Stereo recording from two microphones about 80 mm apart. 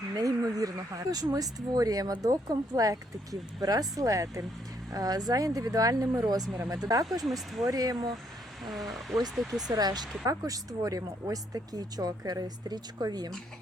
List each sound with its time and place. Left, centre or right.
0.2 s speech: right
7.3 s speech: centre
7.7 s speech: right
8.6 s speech: centre
9.6 s speech: right